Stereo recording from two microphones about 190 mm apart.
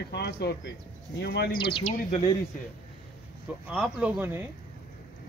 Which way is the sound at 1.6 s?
30° left (ahead or behind).